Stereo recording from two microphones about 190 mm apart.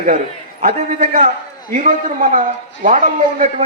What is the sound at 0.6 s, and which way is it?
A man's voice, 45° right (ahead or behind).